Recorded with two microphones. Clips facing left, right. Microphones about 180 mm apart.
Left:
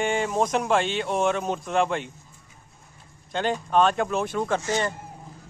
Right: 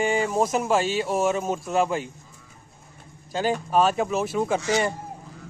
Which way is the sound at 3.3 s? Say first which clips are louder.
Even; 5° right (ahead or behind).